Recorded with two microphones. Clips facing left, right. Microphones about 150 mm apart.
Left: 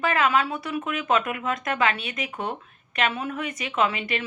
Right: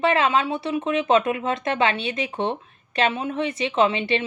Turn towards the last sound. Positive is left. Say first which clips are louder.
# right 5 dB
turn(degrees=-25)  # may be behind; listen again after turning